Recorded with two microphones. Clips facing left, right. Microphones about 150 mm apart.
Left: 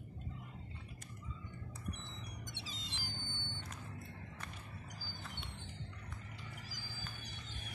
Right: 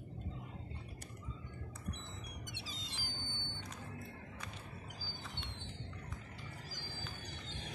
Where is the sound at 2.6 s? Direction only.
Centre (ahead or behind).